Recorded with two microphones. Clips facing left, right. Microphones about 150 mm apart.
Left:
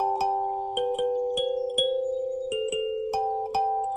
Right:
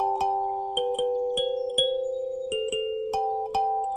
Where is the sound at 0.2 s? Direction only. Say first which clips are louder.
Even; 15° right (ahead or behind).